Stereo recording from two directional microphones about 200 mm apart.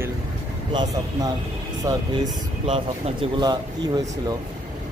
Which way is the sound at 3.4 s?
20° right (ahead or behind).